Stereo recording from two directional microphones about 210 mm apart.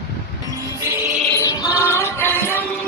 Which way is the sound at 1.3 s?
15° left (ahead or behind).